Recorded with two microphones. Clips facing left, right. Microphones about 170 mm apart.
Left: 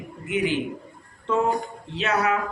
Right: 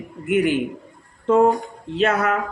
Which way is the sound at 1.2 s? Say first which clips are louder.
Right 8 dB; 50° right (ahead or behind).